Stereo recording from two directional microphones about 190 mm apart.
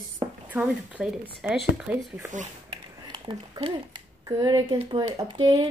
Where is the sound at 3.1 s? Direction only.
25° right (ahead or behind).